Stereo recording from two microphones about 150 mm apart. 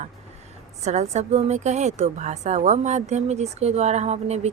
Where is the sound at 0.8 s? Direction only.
50° right (ahead or behind).